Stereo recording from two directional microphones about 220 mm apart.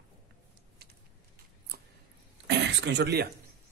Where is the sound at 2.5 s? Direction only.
50° right (ahead or behind).